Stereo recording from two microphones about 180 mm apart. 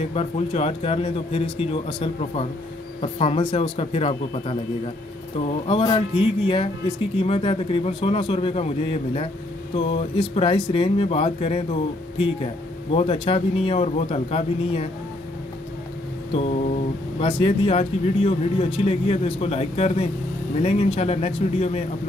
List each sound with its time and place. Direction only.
0.1 s speech: 35° left (ahead or behind)
5.7 s speech: 30° left (ahead or behind)
16.3 s mantra: 35° left (ahead or behind)
17.2 s speech: 30° left (ahead or behind)